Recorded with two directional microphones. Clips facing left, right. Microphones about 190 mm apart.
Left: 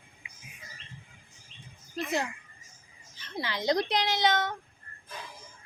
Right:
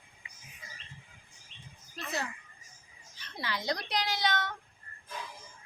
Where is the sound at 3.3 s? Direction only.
25° left (ahead or behind).